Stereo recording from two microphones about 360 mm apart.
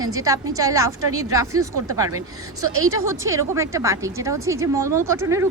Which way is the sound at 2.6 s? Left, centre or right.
Right.